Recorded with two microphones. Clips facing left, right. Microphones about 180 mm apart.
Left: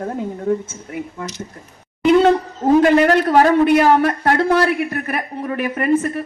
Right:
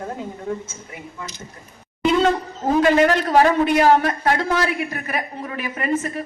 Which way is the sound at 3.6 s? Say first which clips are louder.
Left 3 dB; 55° left (ahead or behind).